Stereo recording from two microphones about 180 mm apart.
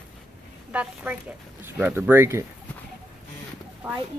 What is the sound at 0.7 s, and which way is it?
A woman's voice, 10° right (ahead or behind).